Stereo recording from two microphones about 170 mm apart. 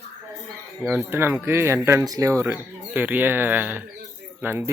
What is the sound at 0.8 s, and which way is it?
Speech, 10° right (ahead or behind).